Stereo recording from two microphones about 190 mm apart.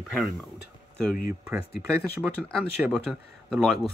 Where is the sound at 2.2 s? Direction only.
Centre (ahead or behind).